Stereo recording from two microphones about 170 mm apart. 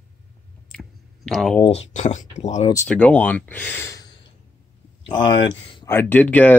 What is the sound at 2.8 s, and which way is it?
Speech, 10° left (ahead or behind).